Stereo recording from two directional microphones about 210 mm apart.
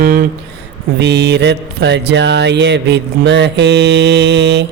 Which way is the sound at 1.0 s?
55° right (ahead or behind).